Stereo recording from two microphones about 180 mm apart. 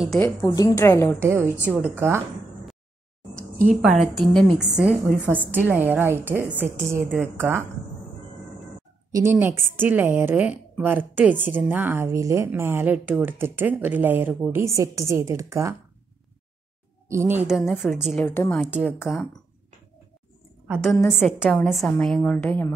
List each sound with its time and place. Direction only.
0.2 s a woman's voice: 15° left (ahead or behind)
1.2 s speech: 15° right (ahead or behind)
4.0 s speech: centre (ahead or behind)
9.1 s speech: 10° right (ahead or behind)
17.1 s speech: 10° right (ahead or behind)
17.6 s a woman's voice: centre (ahead or behind)
18.2 s a woman's voice: 10° left (ahead or behind)
18.7 s a woman's voice: 5° right (ahead or behind)
20.6 s a woman's voice: 5° right (ahead or behind)
21.4 s a woman's voice: 5° left (ahead or behind)